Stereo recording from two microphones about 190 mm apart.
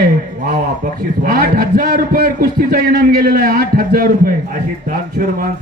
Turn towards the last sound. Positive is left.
turn(degrees=-50)  # may be behind; listen again after turning